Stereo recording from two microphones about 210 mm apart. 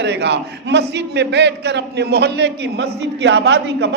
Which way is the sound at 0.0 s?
55° right (ahead or behind).